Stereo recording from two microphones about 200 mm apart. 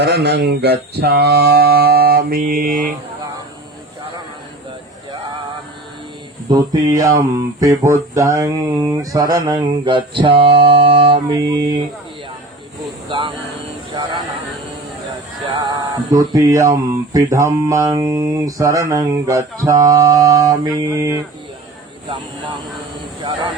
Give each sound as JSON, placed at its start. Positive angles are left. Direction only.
{"t": 0.0, "sound": "music", "side_deg": -55}
{"t": 6.5, "sound": "speech", "side_deg": -20}
{"t": 10.7, "sound": "music", "side_deg": -25}
{"t": 13.1, "sound": "speech", "side_deg": -25}
{"t": 15.5, "sound": "speech", "side_deg": -20}